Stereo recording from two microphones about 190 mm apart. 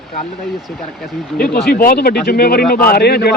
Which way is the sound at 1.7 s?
50° left (ahead or behind).